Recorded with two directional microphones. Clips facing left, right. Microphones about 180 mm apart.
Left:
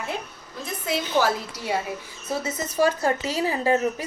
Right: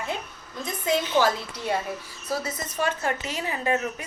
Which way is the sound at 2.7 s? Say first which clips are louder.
Left 6 dB; 35° left (ahead or behind).